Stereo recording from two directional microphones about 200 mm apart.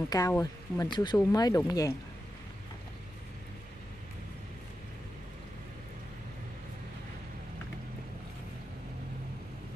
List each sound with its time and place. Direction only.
0.1 s speech: 15° left (ahead or behind)